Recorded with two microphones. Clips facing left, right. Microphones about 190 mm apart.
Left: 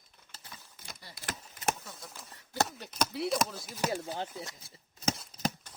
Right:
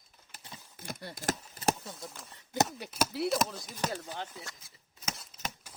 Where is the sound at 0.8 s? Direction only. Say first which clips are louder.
Right 12 dB; 55° right (ahead or behind); by 2.0 s 35° right (ahead or behind).